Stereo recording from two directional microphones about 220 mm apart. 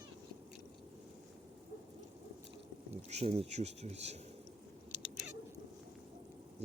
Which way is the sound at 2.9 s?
30° right (ahead or behind).